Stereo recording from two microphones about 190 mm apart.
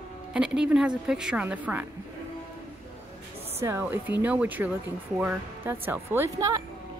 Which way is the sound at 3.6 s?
10° right (ahead or behind).